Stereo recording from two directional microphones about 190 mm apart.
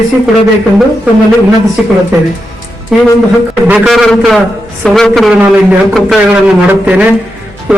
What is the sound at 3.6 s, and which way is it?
A man's voice, 5° right (ahead or behind).